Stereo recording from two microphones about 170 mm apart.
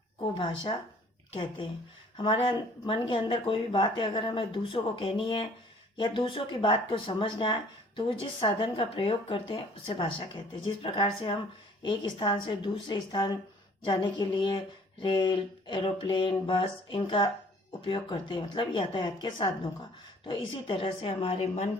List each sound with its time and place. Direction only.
0.2 s speech: 30° left (ahead or behind)
20.5 s speech: 30° left (ahead or behind)